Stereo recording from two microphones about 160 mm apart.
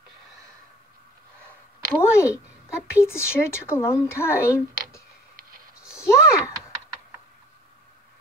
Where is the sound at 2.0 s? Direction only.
15° left (ahead or behind).